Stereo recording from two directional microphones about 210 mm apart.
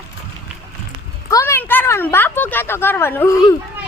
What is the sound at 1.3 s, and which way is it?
Speech, 15° left (ahead or behind).